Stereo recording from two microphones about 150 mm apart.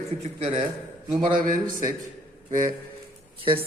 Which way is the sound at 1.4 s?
65° right (ahead or behind).